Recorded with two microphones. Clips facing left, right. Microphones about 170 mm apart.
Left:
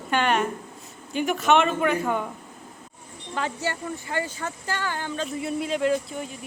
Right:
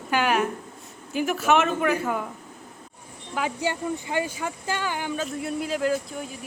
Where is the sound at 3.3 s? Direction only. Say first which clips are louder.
Right 2 dB; 10° right (ahead or behind).